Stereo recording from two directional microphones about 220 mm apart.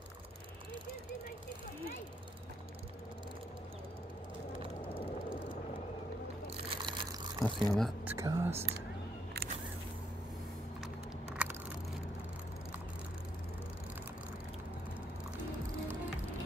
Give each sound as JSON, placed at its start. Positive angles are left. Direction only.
{"t": 4.6, "sound": "vehicle", "side_deg": 25}
{"t": 6.5, "sound": "water", "side_deg": -25}
{"t": 7.6, "sound": "speech", "side_deg": 0}
{"t": 11.4, "sound": "a sound", "side_deg": -5}